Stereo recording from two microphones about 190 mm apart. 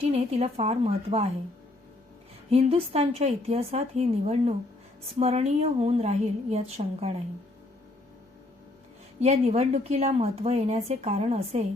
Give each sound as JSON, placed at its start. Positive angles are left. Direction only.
{"t": 0.0, "sound": "speech", "side_deg": -35}
{"t": 2.5, "sound": "speech", "side_deg": -30}
{"t": 9.2, "sound": "speech", "side_deg": -35}